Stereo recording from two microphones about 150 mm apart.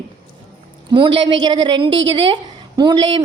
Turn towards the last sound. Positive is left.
turn(degrees=-30)  # may be behind; listen again after turning